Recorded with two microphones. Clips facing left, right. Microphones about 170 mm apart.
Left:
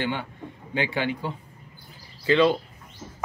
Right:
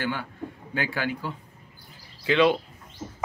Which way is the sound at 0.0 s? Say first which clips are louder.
Left 1 dB; 20° left (ahead or behind).